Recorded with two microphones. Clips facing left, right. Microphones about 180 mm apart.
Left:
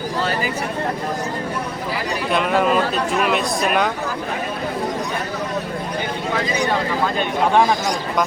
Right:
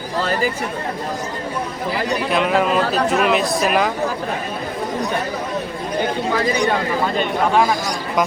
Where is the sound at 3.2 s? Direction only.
Centre (ahead or behind).